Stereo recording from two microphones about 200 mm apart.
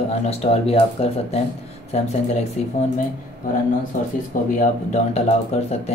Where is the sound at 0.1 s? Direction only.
30° left (ahead or behind).